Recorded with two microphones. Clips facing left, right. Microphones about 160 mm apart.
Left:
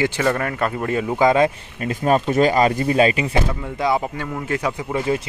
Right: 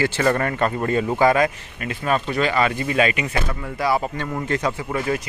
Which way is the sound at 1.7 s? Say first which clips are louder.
Left 5 dB; 35° left (ahead or behind).